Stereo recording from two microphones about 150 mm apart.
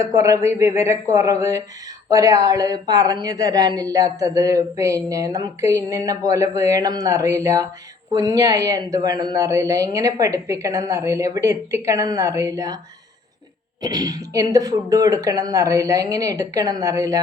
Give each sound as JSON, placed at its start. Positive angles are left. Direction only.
{"t": 0.0, "sound": "a woman's voice", "side_deg": -20}
{"t": 13.8, "sound": "a woman's voice", "side_deg": -25}